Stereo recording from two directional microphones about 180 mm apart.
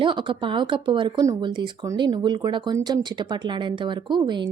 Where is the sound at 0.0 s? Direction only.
25° right (ahead or behind).